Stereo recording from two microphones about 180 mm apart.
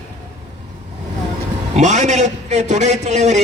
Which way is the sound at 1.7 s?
40° right (ahead or behind).